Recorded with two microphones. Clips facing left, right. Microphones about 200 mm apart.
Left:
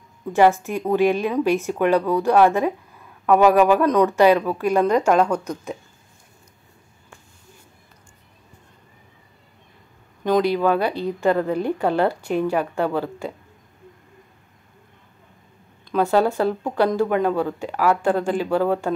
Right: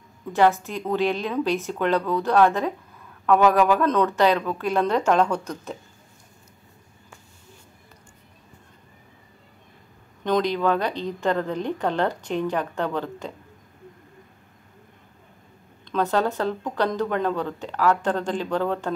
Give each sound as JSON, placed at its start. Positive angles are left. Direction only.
{"t": 0.4, "sound": "a woman's voice", "side_deg": 15}
{"t": 10.2, "sound": "a woman's voice", "side_deg": 10}
{"t": 15.9, "sound": "a woman's voice", "side_deg": 10}